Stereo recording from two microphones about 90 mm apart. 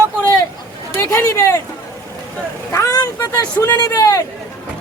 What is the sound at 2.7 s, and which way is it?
A man's voice, 35° left (ahead or behind).